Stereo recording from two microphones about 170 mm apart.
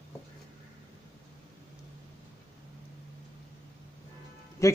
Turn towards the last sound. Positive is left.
turn(degrees=20)  # may be behind; listen again after turning